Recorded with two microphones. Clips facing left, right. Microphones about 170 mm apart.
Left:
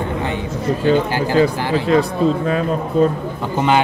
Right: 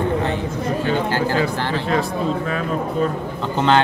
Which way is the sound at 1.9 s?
35° left (ahead or behind).